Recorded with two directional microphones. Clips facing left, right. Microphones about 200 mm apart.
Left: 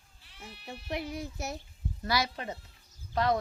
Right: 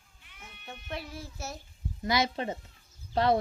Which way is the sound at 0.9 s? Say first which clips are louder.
Left 5 dB; 20° left (ahead or behind).